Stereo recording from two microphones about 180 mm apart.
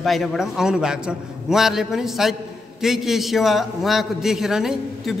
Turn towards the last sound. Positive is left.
turn(degrees=0)  # may be behind; listen again after turning